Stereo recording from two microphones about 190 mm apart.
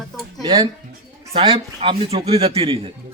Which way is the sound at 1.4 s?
30° right (ahead or behind).